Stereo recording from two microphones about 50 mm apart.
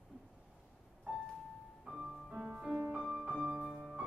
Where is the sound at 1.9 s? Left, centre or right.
Centre.